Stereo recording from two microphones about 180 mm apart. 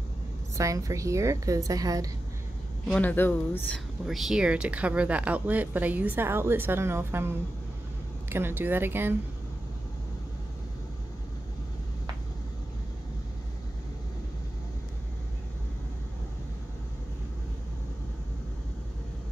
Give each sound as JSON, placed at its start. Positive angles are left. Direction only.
{"t": 0.6, "sound": "a woman's voice", "side_deg": -20}
{"t": 2.9, "sound": "speech", "side_deg": 10}
{"t": 4.0, "sound": "speech", "side_deg": 0}